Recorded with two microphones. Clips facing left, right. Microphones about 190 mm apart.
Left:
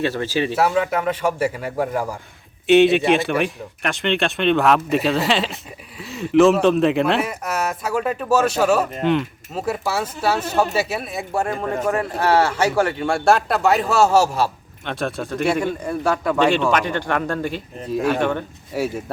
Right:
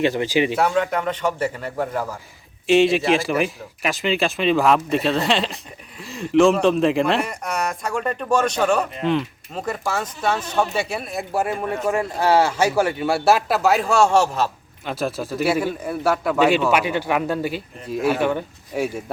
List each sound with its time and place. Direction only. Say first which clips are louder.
0.0 s speech: right 2 dB; 15° right (ahead or behind)
0.5 s a man's voice: left 1 dB; 5° left (ahead or behind)
18.7 s speech: even; 5° left (ahead or behind)